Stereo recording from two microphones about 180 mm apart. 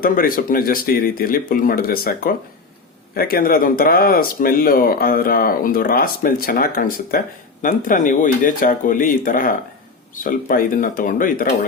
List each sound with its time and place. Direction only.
0.0 s speech: 50° left (ahead or behind)